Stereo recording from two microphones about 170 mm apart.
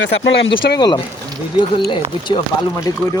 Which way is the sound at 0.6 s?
70° left (ahead or behind).